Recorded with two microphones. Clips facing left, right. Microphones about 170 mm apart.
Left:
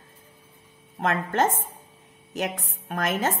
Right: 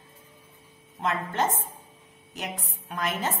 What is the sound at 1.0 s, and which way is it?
Speech, 50° left (ahead or behind).